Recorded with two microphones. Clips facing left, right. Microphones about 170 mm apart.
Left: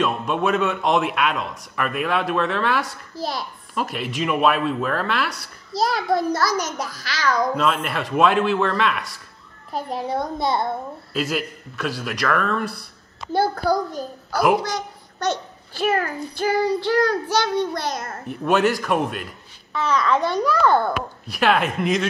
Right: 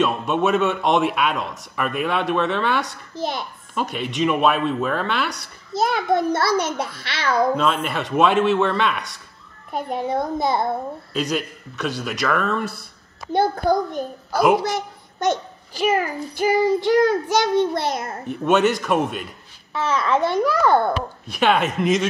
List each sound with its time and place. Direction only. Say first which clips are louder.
0.0 s speech: right 2 dB; centre (ahead or behind)
5.7 s a child's voice: right 1 dB; 20° right (ahead or behind)
7.5 s speech: right 1 dB; centre (ahead or behind)
11.1 s speech: even; 5° left (ahead or behind)
13.3 s a child's voice: right 1 dB; 20° right (ahead or behind)
14.3 s speech: right 2 dB; centre (ahead or behind)
14.6 s a child's voice: right 3 dB; 20° right (ahead or behind)
15.9 s a child's voice: right 1 dB; 10° right (ahead or behind)
18.2 s speech: right 1 dB; centre (ahead or behind)
19.7 s a child's voice: even; 25° right (ahead or behind)
21.3 s speech: right 1 dB; centre (ahead or behind)